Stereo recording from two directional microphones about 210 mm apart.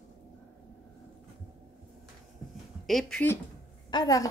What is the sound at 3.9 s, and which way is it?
Speech, 20° left (ahead or behind).